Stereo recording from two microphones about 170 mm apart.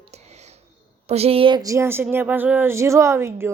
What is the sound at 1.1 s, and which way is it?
A woman's voice, 35° right (ahead or behind).